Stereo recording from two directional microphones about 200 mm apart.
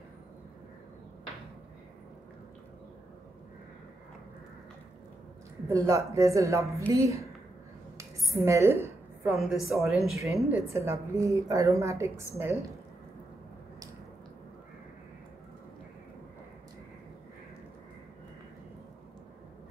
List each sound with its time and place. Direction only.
5.7 s a woman's voice: 15° right (ahead or behind)
8.0 s dishes: 15° right (ahead or behind)
9.4 s a woman's voice: centre (ahead or behind)
10.1 s a woman's voice: 15° right (ahead or behind)